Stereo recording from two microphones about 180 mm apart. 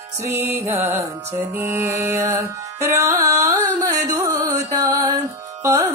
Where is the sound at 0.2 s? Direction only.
15° right (ahead or behind).